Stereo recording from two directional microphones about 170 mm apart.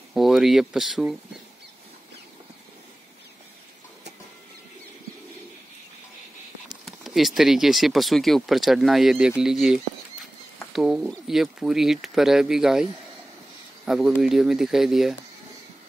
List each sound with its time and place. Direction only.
0.1 s speech: centre (ahead or behind)
6.7 s speech: centre (ahead or behind)